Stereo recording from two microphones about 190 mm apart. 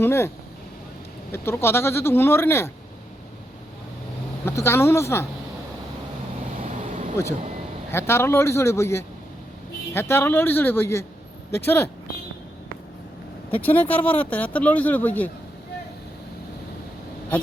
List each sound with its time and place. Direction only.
0.0 s speech: 15° left (ahead or behind)
1.3 s speech: 10° left (ahead or behind)
4.4 s speech: 15° left (ahead or behind)
6.6 s vehicle: 40° right (ahead or behind)
7.9 s speech: 10° left (ahead or behind)
13.5 s speech: 10° left (ahead or behind)